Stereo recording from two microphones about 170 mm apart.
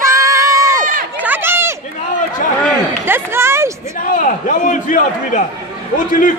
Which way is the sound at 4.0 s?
50° left (ahead or behind).